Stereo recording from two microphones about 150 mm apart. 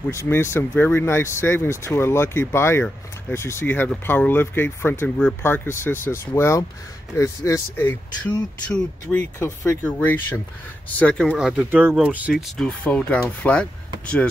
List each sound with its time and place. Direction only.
0.1 s speech: 15° left (ahead or behind)
11.3 s speech: 5° right (ahead or behind)
12.5 s speech: 5° left (ahead or behind)